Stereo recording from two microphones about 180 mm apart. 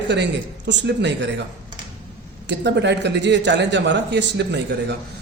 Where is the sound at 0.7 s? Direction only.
75° right (ahead or behind).